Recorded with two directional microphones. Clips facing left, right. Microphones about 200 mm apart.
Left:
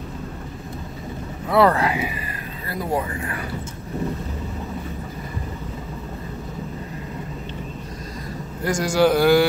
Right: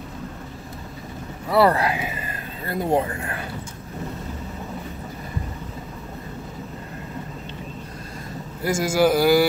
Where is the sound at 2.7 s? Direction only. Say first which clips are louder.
Right 3 dB; 25° right (ahead or behind).